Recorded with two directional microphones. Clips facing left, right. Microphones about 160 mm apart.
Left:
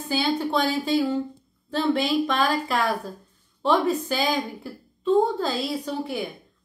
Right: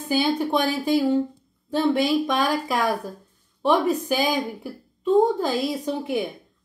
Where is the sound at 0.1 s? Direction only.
15° right (ahead or behind).